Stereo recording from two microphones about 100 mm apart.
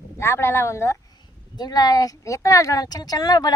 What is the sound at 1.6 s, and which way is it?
Speech, 40° left (ahead or behind).